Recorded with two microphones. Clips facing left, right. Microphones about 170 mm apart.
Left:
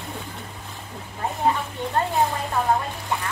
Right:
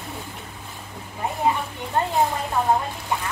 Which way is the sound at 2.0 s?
15° right (ahead or behind).